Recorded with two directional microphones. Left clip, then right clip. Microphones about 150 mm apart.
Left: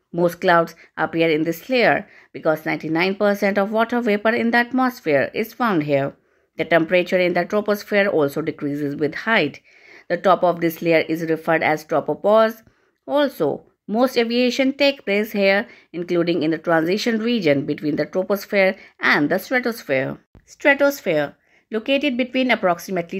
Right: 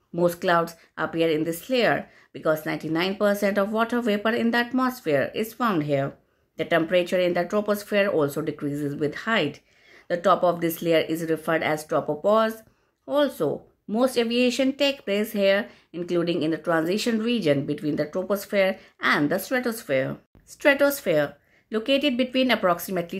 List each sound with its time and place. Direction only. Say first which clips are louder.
0.1 s speech: left 5 dB; 40° left (ahead or behind)
20.6 s speech: left 3 dB; 25° left (ahead or behind)